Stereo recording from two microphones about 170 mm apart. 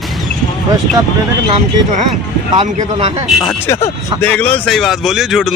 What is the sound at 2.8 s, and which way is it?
Speech, 35° right (ahead or behind).